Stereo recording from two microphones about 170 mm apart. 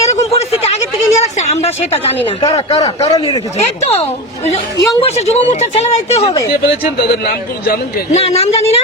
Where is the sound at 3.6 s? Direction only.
40° left (ahead or behind).